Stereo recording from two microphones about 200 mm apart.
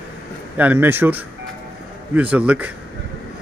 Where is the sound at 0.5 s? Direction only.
10° right (ahead or behind).